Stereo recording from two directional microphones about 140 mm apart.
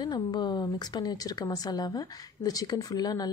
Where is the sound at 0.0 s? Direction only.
30° left (ahead or behind).